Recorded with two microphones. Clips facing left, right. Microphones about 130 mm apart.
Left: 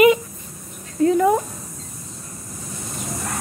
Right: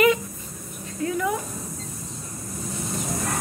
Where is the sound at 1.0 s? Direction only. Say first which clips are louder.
Left 9 dB; 35° left (ahead or behind).